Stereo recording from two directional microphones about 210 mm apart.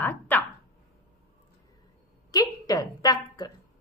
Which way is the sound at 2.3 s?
15° left (ahead or behind).